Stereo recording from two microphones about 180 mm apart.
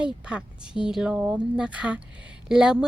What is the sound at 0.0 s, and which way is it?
Speech, 5° right (ahead or behind).